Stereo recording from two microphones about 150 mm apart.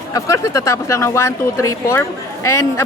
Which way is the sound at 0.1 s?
20° left (ahead or behind).